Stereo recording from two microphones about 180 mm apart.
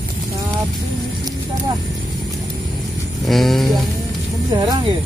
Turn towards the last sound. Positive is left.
turn(degrees=-20)  # may be behind; listen again after turning